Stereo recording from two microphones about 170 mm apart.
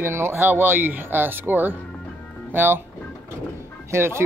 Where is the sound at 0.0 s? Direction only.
15° right (ahead or behind).